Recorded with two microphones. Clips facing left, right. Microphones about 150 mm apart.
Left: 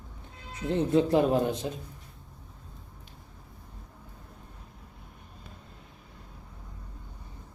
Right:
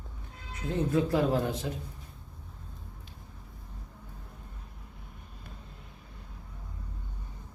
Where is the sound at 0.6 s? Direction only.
25° left (ahead or behind).